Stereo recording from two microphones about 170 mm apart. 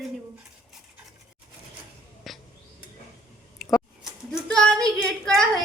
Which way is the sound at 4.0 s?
Centre (ahead or behind).